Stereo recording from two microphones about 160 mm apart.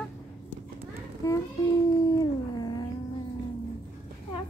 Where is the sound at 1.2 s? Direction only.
20° left (ahead or behind).